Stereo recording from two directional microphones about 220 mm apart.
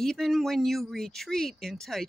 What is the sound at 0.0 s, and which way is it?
Speech, centre (ahead or behind).